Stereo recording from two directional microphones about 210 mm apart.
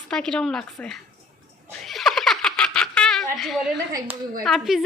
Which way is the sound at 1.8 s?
Centre (ahead or behind).